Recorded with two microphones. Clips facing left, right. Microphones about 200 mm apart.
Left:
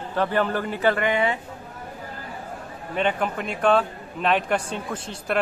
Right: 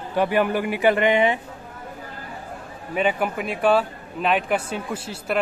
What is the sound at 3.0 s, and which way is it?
A man's voice, 5° right (ahead or behind).